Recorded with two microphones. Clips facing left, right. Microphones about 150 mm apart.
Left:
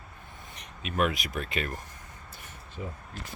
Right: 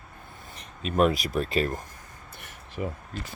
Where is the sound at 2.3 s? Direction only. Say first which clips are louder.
Right 1 dB; 75° right (ahead or behind).